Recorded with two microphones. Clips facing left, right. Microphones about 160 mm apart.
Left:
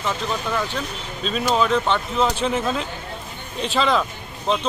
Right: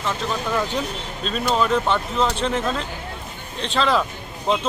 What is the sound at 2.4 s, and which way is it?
Speech, 5° left (ahead or behind).